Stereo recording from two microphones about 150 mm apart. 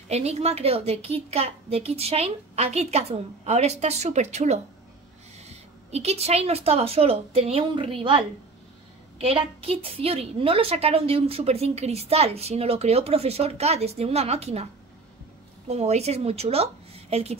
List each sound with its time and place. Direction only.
0.1 s a woman's voice: 45° right (ahead or behind)
15.7 s speech: 45° right (ahead or behind)